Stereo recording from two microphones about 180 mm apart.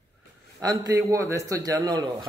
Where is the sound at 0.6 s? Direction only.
20° right (ahead or behind).